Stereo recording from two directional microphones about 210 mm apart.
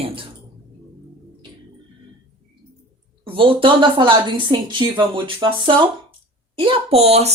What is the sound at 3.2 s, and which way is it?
Speech, 25° right (ahead or behind).